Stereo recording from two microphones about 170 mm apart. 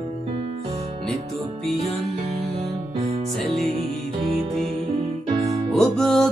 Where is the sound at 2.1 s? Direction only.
35° right (ahead or behind).